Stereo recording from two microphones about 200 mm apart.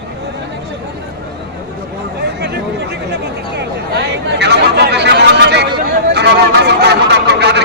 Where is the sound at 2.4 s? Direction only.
55° right (ahead or behind).